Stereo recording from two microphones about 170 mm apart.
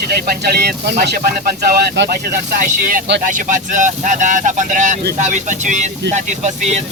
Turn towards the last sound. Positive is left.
turn(degrees=-45)  # may be behind; listen again after turning